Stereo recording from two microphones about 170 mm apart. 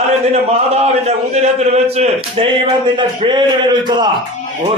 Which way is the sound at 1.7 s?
35° right (ahead or behind).